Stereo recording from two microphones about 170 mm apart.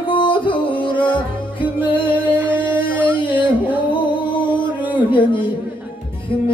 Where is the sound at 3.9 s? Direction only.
30° left (ahead or behind).